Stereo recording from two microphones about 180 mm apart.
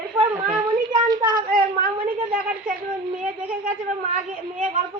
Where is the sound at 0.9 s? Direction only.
20° right (ahead or behind).